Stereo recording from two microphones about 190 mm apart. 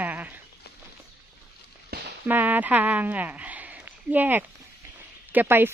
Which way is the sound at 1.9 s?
55° right (ahead or behind).